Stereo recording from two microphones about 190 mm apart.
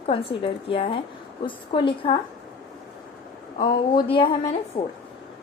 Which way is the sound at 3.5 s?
25° left (ahead or behind).